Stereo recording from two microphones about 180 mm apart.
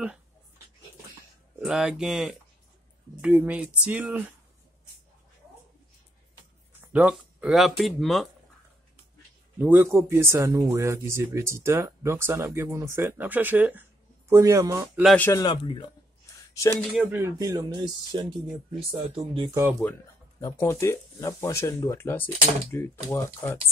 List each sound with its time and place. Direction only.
1.6 s speech: 5° right (ahead or behind)
6.8 s speech: 5° right (ahead or behind)
9.6 s speech: 10° right (ahead or behind)
15.1 s speech: 10° left (ahead or behind)
15.4 s speech: 25° left (ahead or behind)
16.9 s speech: 10° right (ahead or behind); by 19.6 s 25° right (ahead or behind)
19.7 s speech: 10° left (ahead or behind)